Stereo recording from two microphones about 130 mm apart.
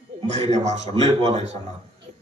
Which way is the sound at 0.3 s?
60° right (ahead or behind).